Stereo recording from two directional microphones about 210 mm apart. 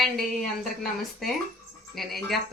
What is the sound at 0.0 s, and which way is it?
A woman's voice, centre (ahead or behind).